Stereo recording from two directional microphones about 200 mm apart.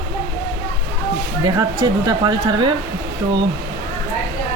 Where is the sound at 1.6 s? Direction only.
20° right (ahead or behind).